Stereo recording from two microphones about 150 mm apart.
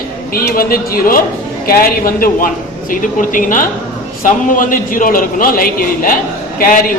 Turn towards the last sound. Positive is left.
turn(degrees=75)  # may be behind; listen again after turning